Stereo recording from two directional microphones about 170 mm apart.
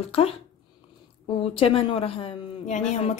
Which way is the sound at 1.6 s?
30° left (ahead or behind).